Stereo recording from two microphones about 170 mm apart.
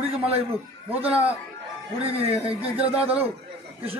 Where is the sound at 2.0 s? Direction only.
35° right (ahead or behind).